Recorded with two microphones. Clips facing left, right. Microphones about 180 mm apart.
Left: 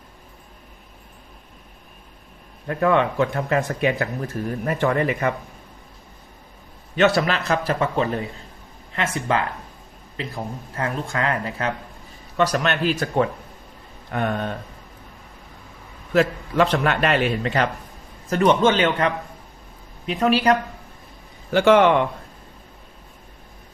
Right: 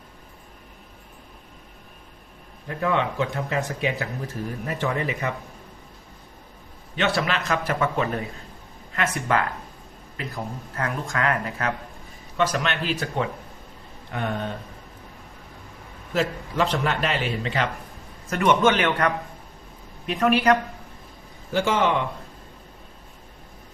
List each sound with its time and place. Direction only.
2.6 s a man's voice: 55° left (ahead or behind)
6.9 s a man's voice: 40° left (ahead or behind)
12.4 s speech: 40° left (ahead or behind)
14.1 s a man's voice: 60° left (ahead or behind)
16.1 s a man's voice: 60° left (ahead or behind); by 17.7 s 45° left (ahead or behind)
18.3 s a man's voice: 30° left (ahead or behind)
21.5 s a man's voice: 65° left (ahead or behind)